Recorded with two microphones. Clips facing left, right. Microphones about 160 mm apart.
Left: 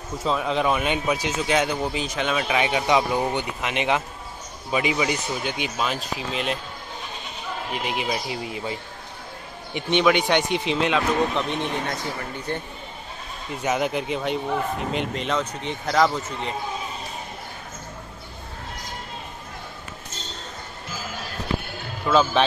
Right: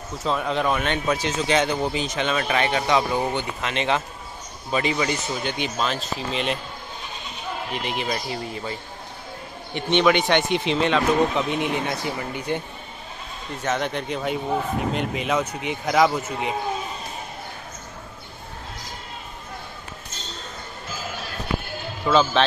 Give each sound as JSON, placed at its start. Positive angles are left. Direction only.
{"t": 0.2, "sound": "speech", "side_deg": 0}
{"t": 7.8, "sound": "speech", "side_deg": 5}
{"t": 9.8, "sound": "speech", "side_deg": 10}
{"t": 12.5, "sound": "speech", "side_deg": -15}
{"t": 13.6, "sound": "speech", "side_deg": 10}
{"t": 22.0, "sound": "a man's voice", "side_deg": 0}